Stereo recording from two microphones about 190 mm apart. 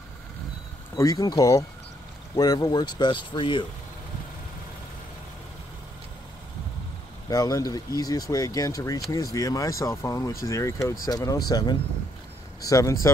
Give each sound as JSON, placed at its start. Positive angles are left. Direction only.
{"t": 0.9, "sound": "speech", "side_deg": 20}
{"t": 7.2, "sound": "speech", "side_deg": 20}